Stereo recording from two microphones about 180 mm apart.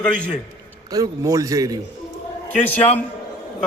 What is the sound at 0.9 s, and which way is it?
Speech, 20° right (ahead or behind).